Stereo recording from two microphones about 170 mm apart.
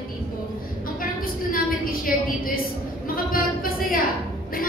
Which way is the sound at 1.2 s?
60° left (ahead or behind).